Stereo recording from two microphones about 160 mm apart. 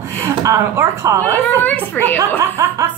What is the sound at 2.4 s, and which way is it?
Speech, 15° right (ahead or behind).